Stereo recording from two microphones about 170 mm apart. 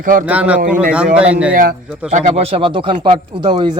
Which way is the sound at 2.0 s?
45° right (ahead or behind).